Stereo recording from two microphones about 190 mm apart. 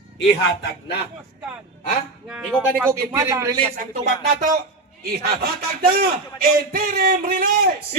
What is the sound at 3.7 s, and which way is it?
A man's voice, 60° right (ahead or behind).